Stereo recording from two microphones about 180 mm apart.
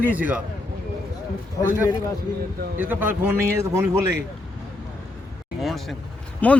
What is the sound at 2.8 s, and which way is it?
Speech, 10° right (ahead or behind).